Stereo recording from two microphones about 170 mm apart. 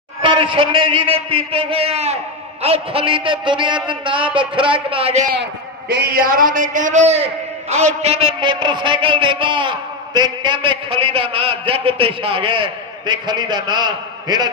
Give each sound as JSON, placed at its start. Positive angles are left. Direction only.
{"t": 0.2, "sound": "a man's voice", "side_deg": -30}
{"t": 5.3, "sound": "a man's voice", "side_deg": -65}